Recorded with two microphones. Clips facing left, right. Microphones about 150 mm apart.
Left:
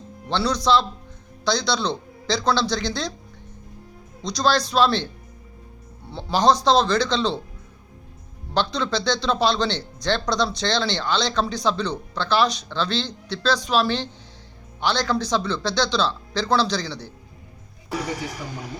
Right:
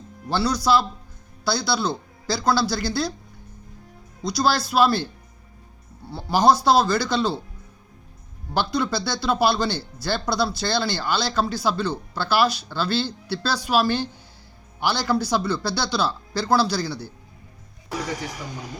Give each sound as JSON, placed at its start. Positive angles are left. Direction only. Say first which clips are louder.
{"t": 0.3, "sound": "speech", "louder": "even", "side_deg": -5}
{"t": 4.2, "sound": "speech", "louder": "left 1 dB", "side_deg": -5}
{"t": 6.1, "sound": "speech", "louder": "right 1 dB", "side_deg": -5}
{"t": 8.5, "sound": "speech", "louder": "even", "side_deg": -10}